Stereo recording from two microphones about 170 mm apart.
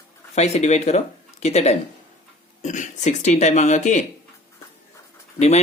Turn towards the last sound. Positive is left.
turn(degrees=40)  # may be behind; listen again after turning